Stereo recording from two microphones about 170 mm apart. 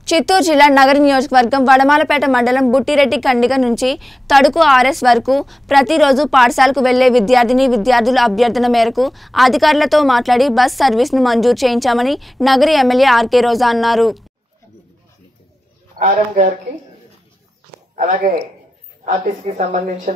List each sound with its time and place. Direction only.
0.0 s a woman's voice: centre (ahead or behind)
16.0 s speech: 45° right (ahead or behind)
17.9 s speech: 50° right (ahead or behind)